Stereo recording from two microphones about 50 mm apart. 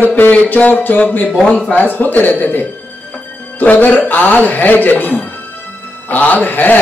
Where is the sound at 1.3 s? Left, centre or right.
Centre.